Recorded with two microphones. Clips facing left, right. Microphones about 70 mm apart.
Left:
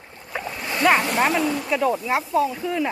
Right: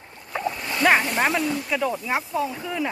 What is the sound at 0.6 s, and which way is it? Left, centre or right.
Splash, left.